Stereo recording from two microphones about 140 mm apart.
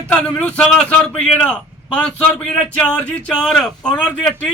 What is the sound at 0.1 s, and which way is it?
A man's voice, 10° left (ahead or behind).